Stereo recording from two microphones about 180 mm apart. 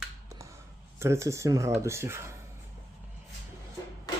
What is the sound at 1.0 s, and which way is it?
Speech, 15° right (ahead or behind).